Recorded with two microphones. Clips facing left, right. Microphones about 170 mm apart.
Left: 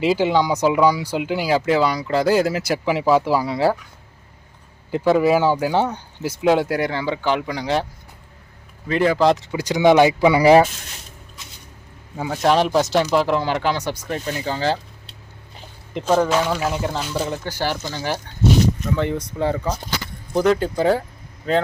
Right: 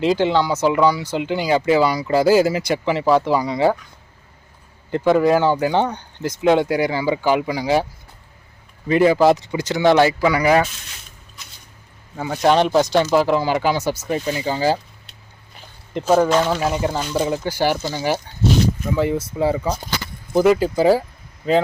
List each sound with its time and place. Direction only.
0.0 s speech: 5° left (ahead or behind)
4.9 s speech: 5° left (ahead or behind)
8.9 s speech: 10° right (ahead or behind)
9.6 s speech: 10° left (ahead or behind)
12.1 s speech: 5° left (ahead or behind)
16.0 s speech: 5° right (ahead or behind)